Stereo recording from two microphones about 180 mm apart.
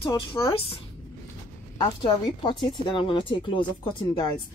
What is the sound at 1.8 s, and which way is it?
Speech, 25° left (ahead or behind).